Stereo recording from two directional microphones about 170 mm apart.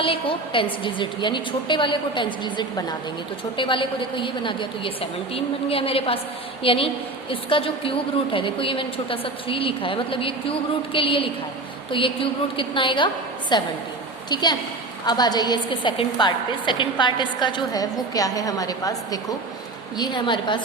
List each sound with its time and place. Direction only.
0.0 s a woman's voice: 30° left (ahead or behind)
15.0 s a woman's voice: 25° left (ahead or behind)